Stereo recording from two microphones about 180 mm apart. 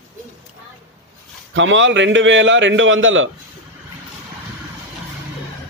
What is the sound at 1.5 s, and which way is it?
A man's voice, 90° right.